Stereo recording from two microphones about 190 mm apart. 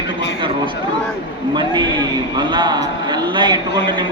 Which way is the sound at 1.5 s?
25° right (ahead or behind).